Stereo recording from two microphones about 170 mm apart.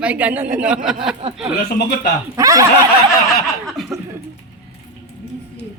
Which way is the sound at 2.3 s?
20° right (ahead or behind).